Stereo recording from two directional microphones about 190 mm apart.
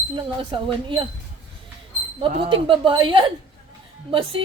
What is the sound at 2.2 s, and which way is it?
A woman's voice, 25° right (ahead or behind).